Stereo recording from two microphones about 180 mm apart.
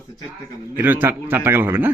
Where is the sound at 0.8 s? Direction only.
10° right (ahead or behind).